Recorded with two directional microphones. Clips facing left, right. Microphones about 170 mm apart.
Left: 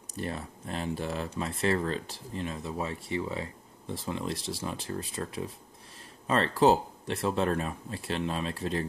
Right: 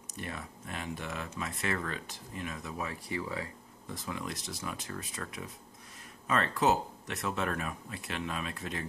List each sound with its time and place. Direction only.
0.1 s speech: 30° left (ahead or behind)